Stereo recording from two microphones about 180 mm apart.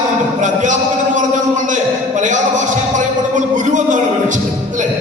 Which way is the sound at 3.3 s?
45° right (ahead or behind).